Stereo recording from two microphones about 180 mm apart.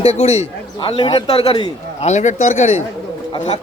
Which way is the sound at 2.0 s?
40° left (ahead or behind).